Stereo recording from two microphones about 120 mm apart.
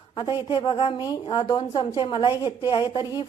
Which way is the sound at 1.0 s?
35° left (ahead or behind).